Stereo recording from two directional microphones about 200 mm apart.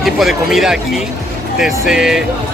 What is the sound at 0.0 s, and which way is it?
Speech, centre (ahead or behind).